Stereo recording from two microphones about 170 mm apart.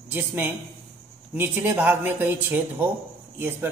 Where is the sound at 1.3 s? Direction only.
10° right (ahead or behind).